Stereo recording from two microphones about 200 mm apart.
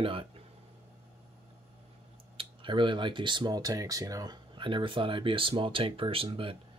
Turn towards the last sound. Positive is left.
turn(degrees=-25)  # may be behind; listen again after turning